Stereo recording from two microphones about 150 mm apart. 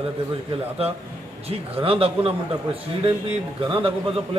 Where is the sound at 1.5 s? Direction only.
40° right (ahead or behind).